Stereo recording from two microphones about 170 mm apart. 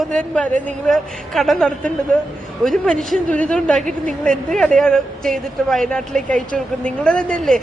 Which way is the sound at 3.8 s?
50° right (ahead or behind).